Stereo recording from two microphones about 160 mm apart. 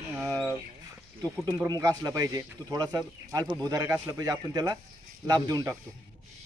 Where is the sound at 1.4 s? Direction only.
25° right (ahead or behind).